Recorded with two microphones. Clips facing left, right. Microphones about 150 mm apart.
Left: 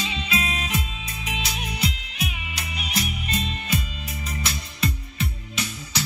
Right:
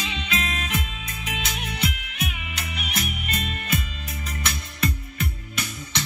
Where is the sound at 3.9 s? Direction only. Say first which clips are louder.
Left 2 dB; 5° left (ahead or behind).